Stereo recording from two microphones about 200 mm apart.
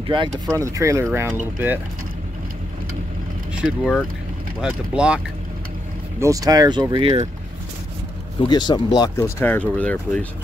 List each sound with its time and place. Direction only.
0.1 s speech: 20° right (ahead or behind)
3.5 s speech: 5° right (ahead or behind)
6.1 s speech: 15° right (ahead or behind)
8.5 s speech: 20° left (ahead or behind); by 10.2 s 5° left (ahead or behind)